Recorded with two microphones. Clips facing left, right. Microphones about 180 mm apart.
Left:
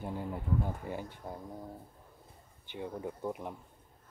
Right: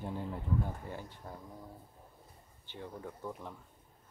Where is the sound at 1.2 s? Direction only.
20° left (ahead or behind).